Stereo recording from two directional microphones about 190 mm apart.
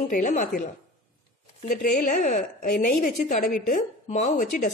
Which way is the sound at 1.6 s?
45° left (ahead or behind).